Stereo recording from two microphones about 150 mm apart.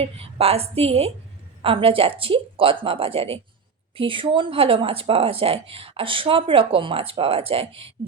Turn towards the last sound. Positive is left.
turn(degrees=-40)  # may be behind; listen again after turning